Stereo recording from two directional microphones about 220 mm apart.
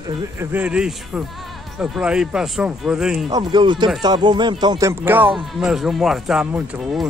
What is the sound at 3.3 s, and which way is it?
Speech, 20° right (ahead or behind).